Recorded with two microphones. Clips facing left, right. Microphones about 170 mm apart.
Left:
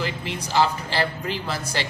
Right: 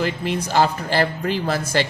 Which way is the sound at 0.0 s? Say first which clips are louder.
Right 6 dB; 50° right (ahead or behind).